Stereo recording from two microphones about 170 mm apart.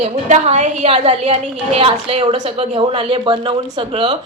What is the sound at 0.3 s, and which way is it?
A woman's voice, 40° right (ahead or behind).